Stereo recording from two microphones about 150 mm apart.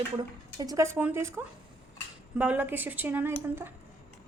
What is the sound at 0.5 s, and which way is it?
Speech, 25° right (ahead or behind).